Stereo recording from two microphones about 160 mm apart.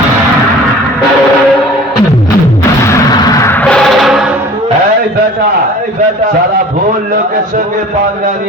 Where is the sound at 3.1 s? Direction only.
20° left (ahead or behind); by 4.3 s centre (ahead or behind).